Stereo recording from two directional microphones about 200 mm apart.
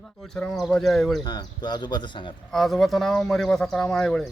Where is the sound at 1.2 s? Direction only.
20° left (ahead or behind).